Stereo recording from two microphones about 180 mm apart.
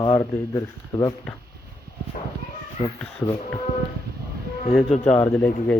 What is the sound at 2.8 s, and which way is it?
Speech, 40° left (ahead or behind).